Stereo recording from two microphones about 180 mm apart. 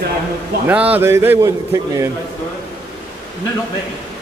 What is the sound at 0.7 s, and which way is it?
A man's voice, 10° right (ahead or behind).